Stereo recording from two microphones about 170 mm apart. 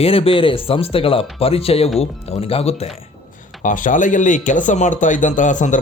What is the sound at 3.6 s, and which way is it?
Speech, 50° left (ahead or behind).